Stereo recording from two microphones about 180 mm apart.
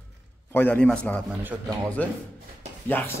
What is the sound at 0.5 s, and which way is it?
Speech, 10° left (ahead or behind).